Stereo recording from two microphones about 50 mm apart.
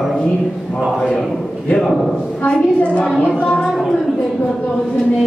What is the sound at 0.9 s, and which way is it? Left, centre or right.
Speech, centre.